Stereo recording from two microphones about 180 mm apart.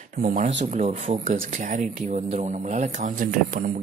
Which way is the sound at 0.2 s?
50° right (ahead or behind).